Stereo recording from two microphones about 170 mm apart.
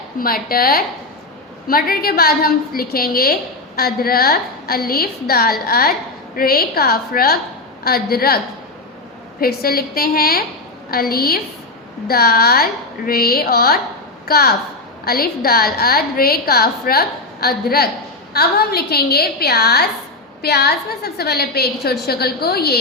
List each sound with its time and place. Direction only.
0.2 s a woman's voice: 60° left (ahead or behind)
9.4 s a woman's voice: 65° left (ahead or behind)